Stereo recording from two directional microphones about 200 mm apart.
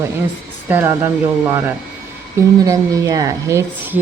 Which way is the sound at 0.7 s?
10° right (ahead or behind).